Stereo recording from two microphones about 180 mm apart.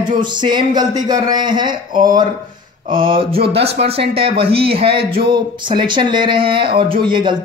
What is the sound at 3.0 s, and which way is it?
Speech, 30° right (ahead or behind).